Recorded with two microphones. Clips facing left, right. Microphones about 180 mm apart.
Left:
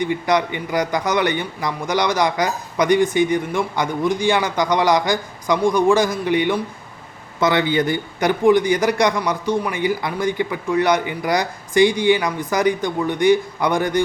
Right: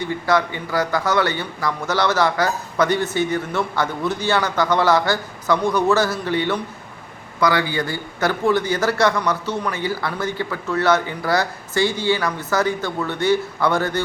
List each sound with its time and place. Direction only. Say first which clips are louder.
0.0 s a man's voice: left 1 dB; 15° left (ahead or behind)